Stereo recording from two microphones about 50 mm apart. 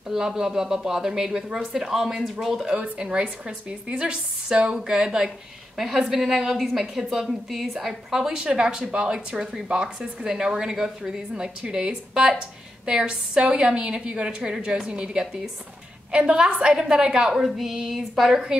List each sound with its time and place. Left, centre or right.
0.1 s speech: centre
2.7 s a woman's voice: right; by 18.4 s centre